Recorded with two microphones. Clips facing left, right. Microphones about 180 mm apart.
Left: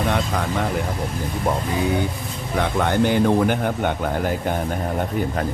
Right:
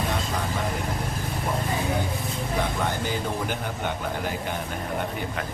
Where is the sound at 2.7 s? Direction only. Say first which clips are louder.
Left 9 dB; 65° left (ahead or behind).